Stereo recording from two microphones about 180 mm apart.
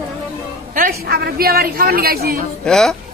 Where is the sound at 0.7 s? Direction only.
55° right (ahead or behind).